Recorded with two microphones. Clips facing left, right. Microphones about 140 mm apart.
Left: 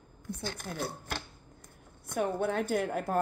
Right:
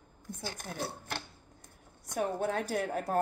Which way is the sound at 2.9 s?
65° left (ahead or behind).